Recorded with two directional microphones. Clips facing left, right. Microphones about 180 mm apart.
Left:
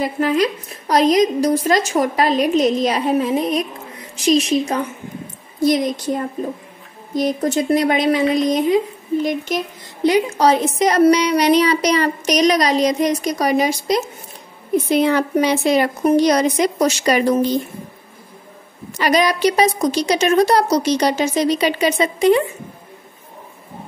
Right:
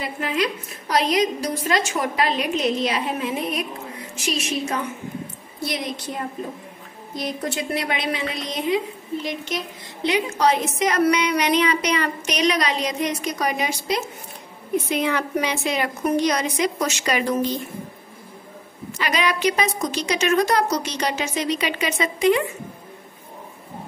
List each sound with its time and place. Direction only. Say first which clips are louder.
0.0 s a woman's voice: left 7 dB; 40° left (ahead or behind)
18.9 s a woman's voice: left 7 dB; 40° left (ahead or behind)